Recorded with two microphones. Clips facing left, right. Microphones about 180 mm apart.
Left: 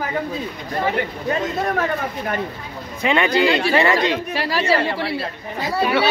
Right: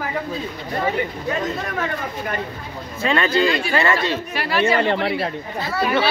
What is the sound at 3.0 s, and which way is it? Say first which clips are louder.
Speech: left 1 dB; 15° left (ahead or behind).